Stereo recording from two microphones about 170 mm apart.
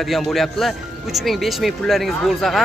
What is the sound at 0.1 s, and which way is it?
Speech, centre (ahead or behind).